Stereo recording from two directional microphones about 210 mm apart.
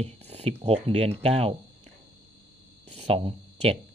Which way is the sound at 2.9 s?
30° right (ahead or behind).